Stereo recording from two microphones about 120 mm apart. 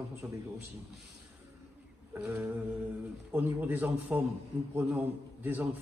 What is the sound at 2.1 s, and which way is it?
A man's voice, 15° right (ahead or behind).